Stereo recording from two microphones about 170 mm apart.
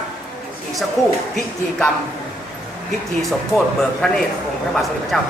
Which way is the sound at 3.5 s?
5° left (ahead or behind).